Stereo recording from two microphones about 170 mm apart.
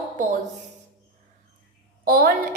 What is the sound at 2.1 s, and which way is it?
Speech, 60° right (ahead or behind).